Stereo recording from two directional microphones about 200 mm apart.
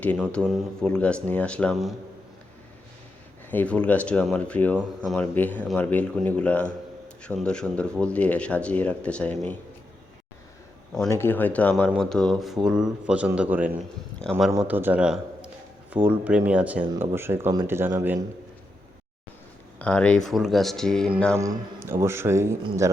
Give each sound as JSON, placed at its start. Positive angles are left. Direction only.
{"t": 0.0, "sound": "speech", "side_deg": 5}
{"t": 3.5, "sound": "speech", "side_deg": 5}
{"t": 11.1, "sound": "a man's voice", "side_deg": 10}
{"t": 14.6, "sound": "a man's voice", "side_deg": -10}
{"t": 19.8, "sound": "speech", "side_deg": 5}
{"t": 21.3, "sound": "a man's voice", "side_deg": -15}